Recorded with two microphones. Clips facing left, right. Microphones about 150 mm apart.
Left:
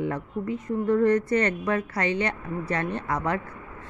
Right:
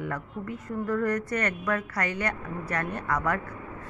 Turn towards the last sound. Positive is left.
turn(degrees=25)  # may be behind; listen again after turning